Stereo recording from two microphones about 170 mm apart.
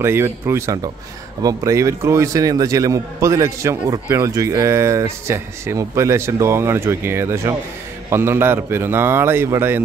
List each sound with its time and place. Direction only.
0.0 s a man's voice: 15° right (ahead or behind)